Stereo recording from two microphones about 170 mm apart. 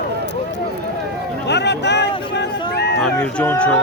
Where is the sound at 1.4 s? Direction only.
85° left.